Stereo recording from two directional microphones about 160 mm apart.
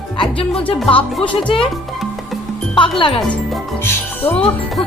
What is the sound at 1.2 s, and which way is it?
Speech, 30° left (ahead or behind).